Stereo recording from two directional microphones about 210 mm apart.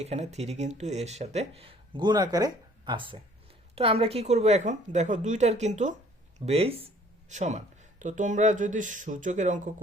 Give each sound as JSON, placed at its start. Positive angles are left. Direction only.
{"t": 0.0, "sound": "speech", "side_deg": -30}